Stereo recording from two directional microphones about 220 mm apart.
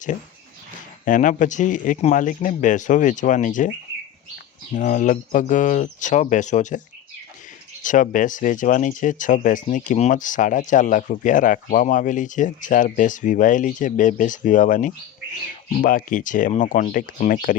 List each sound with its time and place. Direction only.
1.0 s speech: 35° left (ahead or behind)
4.7 s speech: 35° left (ahead or behind)